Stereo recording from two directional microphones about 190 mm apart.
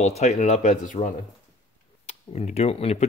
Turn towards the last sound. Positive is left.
turn(degrees=35)  # may be behind; listen again after turning